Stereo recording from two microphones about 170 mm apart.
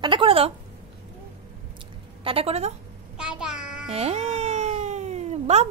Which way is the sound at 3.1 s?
5° right (ahead or behind).